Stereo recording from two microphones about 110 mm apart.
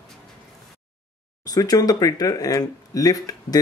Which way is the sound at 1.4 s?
35° left (ahead or behind).